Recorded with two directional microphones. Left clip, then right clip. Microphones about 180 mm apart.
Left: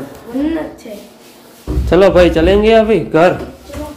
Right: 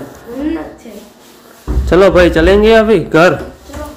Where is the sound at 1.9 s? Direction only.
10° right (ahead or behind).